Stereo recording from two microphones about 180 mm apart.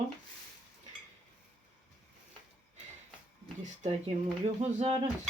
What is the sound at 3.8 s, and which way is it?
Speech, 35° right (ahead or behind).